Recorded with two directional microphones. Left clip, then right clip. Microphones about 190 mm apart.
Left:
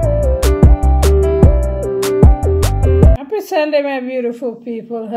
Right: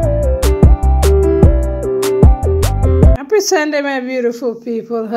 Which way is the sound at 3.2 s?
25° right (ahead or behind).